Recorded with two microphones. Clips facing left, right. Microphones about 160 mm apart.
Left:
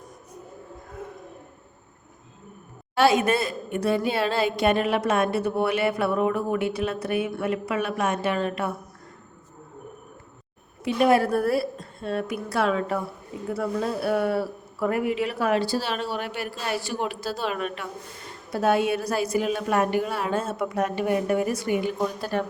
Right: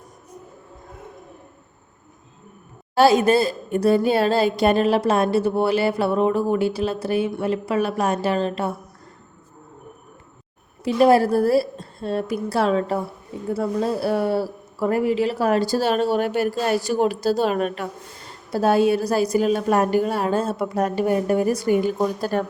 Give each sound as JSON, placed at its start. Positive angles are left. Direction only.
{"t": 2.9, "sound": "a woman's voice", "side_deg": -35}
{"t": 10.8, "sound": "a woman's voice", "side_deg": -35}